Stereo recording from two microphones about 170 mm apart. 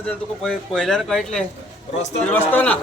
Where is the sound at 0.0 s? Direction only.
5° left (ahead or behind).